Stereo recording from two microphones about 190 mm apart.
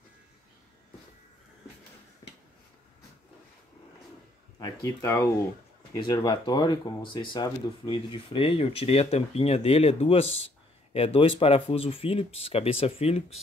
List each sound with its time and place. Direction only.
4.6 s speech: 20° left (ahead or behind)